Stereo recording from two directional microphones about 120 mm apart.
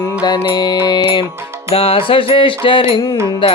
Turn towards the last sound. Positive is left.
turn(degrees=45)  # may be behind; listen again after turning